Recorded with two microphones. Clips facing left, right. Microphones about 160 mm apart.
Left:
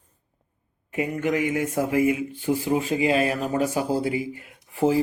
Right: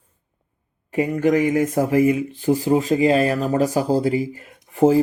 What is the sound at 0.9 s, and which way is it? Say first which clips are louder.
Speech: right 6 dB; 35° right (ahead or behind).